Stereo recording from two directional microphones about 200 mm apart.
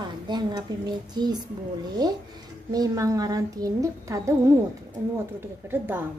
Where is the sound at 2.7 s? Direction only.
20° right (ahead or behind).